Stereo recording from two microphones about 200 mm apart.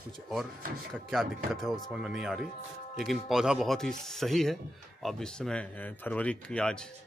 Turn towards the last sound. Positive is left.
turn(degrees=5)  # may be behind; listen again after turning